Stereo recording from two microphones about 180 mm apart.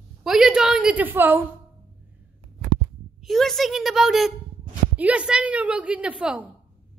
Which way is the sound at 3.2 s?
Centre (ahead or behind).